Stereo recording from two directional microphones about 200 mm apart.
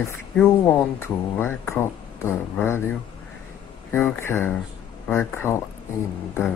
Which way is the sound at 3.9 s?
10° left (ahead or behind).